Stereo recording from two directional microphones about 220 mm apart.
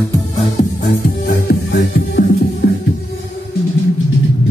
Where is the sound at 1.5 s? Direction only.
45° left (ahead or behind).